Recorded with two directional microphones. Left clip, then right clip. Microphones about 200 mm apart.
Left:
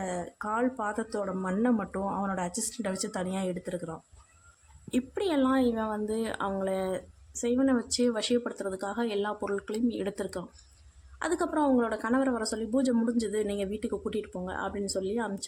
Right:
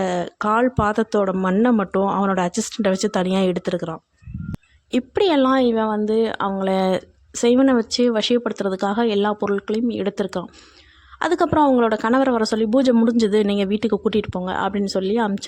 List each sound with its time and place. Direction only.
0.0 s speech: 45° right (ahead or behind)